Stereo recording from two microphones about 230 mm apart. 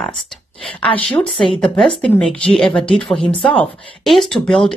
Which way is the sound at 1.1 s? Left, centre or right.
Centre.